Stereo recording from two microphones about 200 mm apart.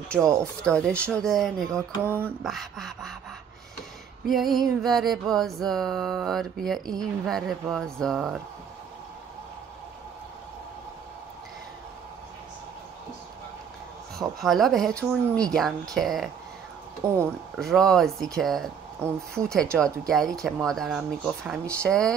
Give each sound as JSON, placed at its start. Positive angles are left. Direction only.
{"t": 0.2, "sound": "speech", "side_deg": -15}
{"t": 0.6, "sound": "music", "side_deg": 5}
{"t": 4.3, "sound": "music", "side_deg": 0}
{"t": 14.4, "sound": "music", "side_deg": 0}
{"t": 15.2, "sound": "speech", "side_deg": -15}
{"t": 15.5, "sound": "music", "side_deg": 0}
{"t": 17.6, "sound": "music", "side_deg": 0}
{"t": 19.0, "sound": "speech", "side_deg": -10}
{"t": 19.3, "sound": "music", "side_deg": 5}